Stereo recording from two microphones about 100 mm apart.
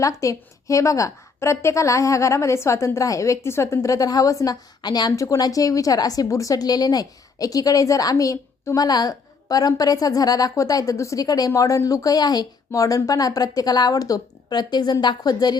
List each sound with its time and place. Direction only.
0.0 s a woman's voice: 35° left (ahead or behind)